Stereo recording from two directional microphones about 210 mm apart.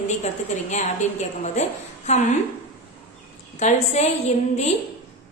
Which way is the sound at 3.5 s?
35° left (ahead or behind).